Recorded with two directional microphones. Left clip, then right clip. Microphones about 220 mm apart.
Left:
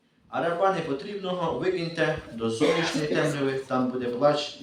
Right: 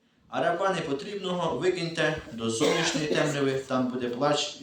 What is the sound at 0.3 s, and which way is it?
A man's voice, 40° right (ahead or behind).